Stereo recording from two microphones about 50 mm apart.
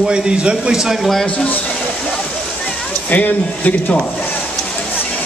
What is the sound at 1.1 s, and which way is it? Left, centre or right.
Speech, centre.